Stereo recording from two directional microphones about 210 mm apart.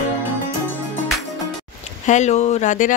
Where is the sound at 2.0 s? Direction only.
35° left (ahead or behind).